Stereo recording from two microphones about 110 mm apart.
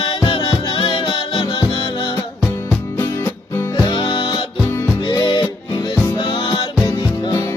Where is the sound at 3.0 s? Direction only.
20° left (ahead or behind).